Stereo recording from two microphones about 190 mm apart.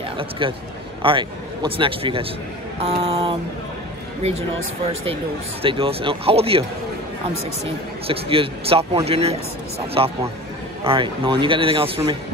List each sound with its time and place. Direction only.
0.2 s a man's voice: 25° right (ahead or behind)
5.6 s a man's voice: 30° right (ahead or behind)
8.1 s a man's voice: 30° right (ahead or behind)